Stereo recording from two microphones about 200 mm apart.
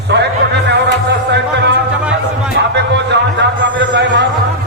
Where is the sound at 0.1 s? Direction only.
55° right (ahead or behind).